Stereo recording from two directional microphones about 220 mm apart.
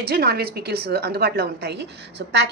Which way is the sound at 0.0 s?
45° right (ahead or behind).